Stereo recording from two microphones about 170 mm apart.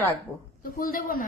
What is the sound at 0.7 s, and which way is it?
Speech, 55° left (ahead or behind).